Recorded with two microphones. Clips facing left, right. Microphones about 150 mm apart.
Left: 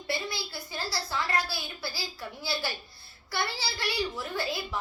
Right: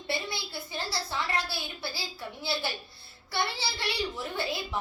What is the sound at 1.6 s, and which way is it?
A child's voice, 20° right (ahead or behind).